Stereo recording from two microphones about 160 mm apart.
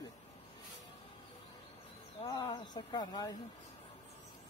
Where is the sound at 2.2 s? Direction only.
25° left (ahead or behind).